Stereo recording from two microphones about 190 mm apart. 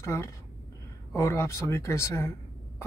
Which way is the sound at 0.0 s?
15° left (ahead or behind).